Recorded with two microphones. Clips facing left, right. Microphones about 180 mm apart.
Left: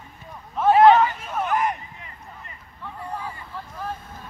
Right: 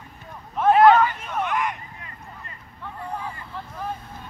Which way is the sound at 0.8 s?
20° left (ahead or behind).